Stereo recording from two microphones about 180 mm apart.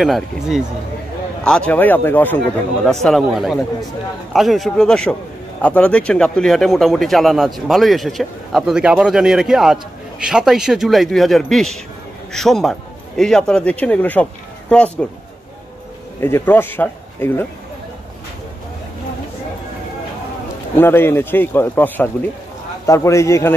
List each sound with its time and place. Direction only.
0.0 s speech: centre (ahead or behind)
16.2 s speech: 15° left (ahead or behind)
20.7 s speech: 10° left (ahead or behind)